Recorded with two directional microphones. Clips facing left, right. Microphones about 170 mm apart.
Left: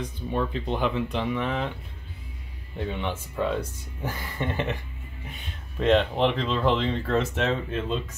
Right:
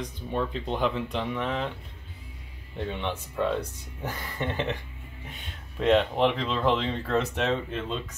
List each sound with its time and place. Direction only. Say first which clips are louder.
0.3 s speech: left 2 dB; 5° left (ahead or behind)
2.8 s speech: left 1 dB; 5° left (ahead or behind)
5.8 s speech: left 1 dB; centre (ahead or behind)